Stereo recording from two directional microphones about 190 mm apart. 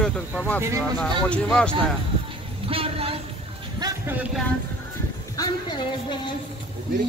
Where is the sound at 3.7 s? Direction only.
20° right (ahead or behind).